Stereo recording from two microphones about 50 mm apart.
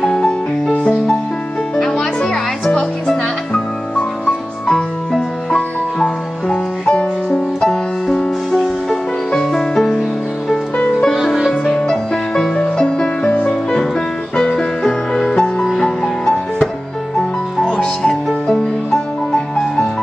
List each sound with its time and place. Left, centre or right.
0.1 s music: centre
4.6 s music: centre
7.6 s music: centre
11.7 s music: centre